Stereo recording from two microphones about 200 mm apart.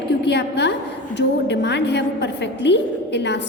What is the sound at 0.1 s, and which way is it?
A woman's voice, 55° left (ahead or behind).